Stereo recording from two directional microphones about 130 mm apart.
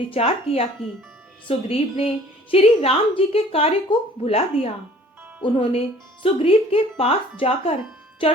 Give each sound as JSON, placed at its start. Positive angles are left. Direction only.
{"t": 0.1, "sound": "a woman's voice", "side_deg": 50}